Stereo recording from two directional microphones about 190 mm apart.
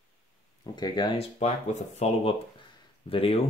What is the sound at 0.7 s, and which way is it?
Speech, 25° left (ahead or behind).